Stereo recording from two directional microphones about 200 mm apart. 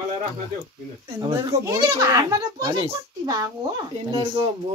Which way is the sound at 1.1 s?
15° right (ahead or behind).